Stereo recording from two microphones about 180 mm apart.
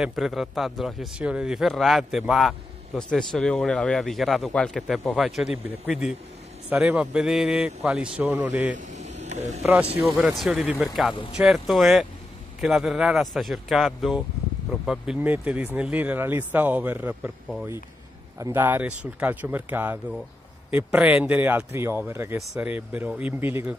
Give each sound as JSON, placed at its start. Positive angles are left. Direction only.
{"t": 0.0, "sound": "speech", "side_deg": 0}
{"t": 8.7, "sound": "vehicle", "side_deg": -40}
{"t": 9.2, "sound": "a sound", "side_deg": -40}
{"t": 10.0, "sound": "speech", "side_deg": 0}